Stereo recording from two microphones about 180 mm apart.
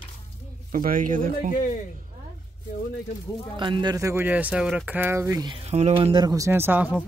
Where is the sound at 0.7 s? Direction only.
50° right (ahead or behind).